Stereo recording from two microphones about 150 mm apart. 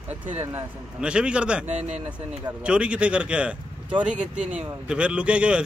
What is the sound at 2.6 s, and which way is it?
Speech, 5° right (ahead or behind).